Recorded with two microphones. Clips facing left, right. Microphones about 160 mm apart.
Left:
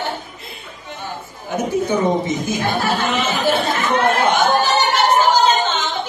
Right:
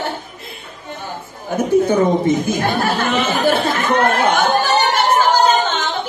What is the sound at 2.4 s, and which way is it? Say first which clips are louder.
Speech: right 2 dB; 50° right (ahead or behind).